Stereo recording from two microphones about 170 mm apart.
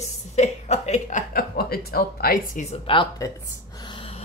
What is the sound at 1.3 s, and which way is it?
A woman's voice, 65° left (ahead or behind).